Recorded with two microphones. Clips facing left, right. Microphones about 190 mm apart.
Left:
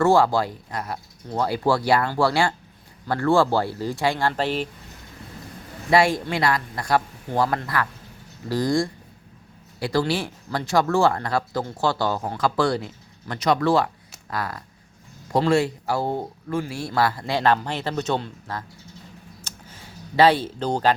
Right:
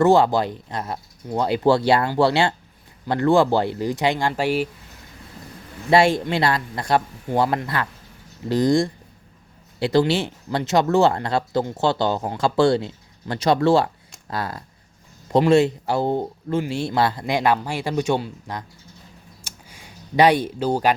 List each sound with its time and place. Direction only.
0.0 s speech: 20° right (ahead or behind)
5.9 s speech: 25° right (ahead or behind)
19.4 s a sound: 10° right (ahead or behind)